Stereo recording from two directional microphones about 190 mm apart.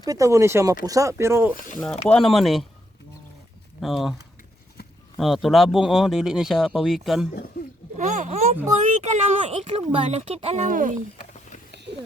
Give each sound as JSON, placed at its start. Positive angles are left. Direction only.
{"t": 0.0, "sound": "speech", "side_deg": -20}
{"t": 2.0, "sound": "speech", "side_deg": 0}
{"t": 3.8, "sound": "speech", "side_deg": 0}
{"t": 5.1, "sound": "speech", "side_deg": 0}
{"t": 7.9, "sound": "a woman's voice", "side_deg": -40}
{"t": 11.2, "sound": "a sound", "side_deg": 40}
{"t": 11.7, "sound": "a sound", "side_deg": -65}